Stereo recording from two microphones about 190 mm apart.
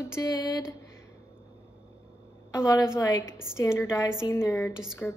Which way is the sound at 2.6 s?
15° left (ahead or behind).